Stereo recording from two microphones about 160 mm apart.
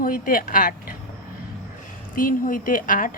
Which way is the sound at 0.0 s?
60° left (ahead or behind).